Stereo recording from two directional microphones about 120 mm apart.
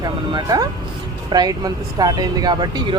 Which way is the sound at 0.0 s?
35° right (ahead or behind).